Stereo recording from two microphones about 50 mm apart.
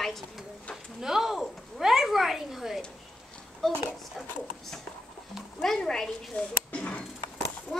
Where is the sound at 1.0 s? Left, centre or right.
Centre.